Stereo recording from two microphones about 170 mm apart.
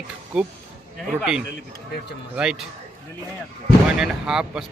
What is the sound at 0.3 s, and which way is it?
Speech, 5° right (ahead or behind).